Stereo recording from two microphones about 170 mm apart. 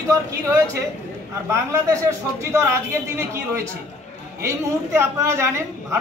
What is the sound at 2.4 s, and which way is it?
A woman's voice, 15° right (ahead or behind).